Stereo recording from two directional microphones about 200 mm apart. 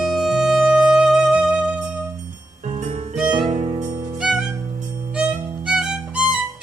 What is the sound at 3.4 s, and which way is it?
Music, 35° right (ahead or behind).